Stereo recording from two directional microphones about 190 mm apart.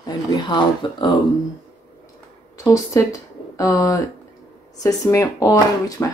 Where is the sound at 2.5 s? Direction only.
15° left (ahead or behind).